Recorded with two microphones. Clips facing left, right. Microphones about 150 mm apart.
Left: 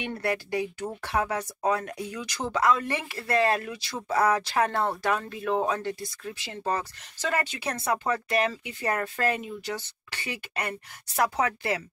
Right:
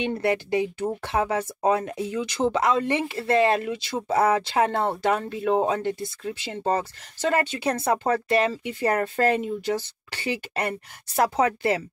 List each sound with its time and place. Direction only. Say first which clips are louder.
0.0 s speech: right 5 dB; 20° right (ahead or behind)